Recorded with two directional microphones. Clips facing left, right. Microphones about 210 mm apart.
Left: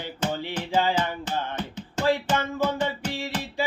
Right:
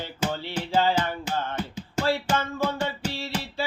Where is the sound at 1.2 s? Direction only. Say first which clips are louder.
Even; 10° right (ahead or behind).